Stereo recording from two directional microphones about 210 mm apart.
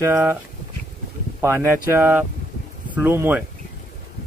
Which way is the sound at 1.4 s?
10° right (ahead or behind).